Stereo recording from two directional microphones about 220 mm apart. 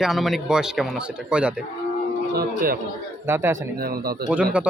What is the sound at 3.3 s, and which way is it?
Speech, 10° right (ahead or behind).